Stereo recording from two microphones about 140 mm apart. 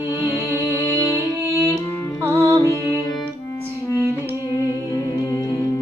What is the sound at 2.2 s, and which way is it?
Music, 20° right (ahead or behind).